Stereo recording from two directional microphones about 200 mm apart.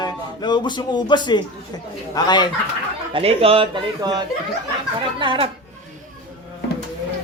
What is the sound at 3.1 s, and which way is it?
Speech, 30° right (ahead or behind).